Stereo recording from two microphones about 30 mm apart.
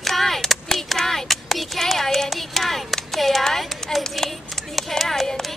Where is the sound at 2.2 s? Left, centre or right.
Centre.